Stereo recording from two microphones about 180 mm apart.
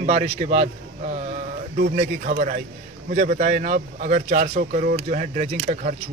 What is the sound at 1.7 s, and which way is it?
Speech, 45° right (ahead or behind).